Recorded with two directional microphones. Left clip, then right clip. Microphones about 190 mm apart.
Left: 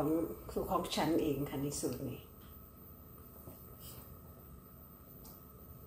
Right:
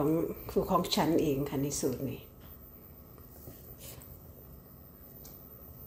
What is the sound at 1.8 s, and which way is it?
Speech, 45° right (ahead or behind).